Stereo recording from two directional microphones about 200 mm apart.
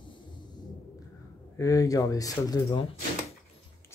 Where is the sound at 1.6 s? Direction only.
15° left (ahead or behind).